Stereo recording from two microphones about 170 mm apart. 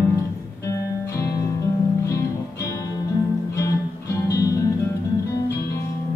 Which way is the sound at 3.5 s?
15° left (ahead or behind).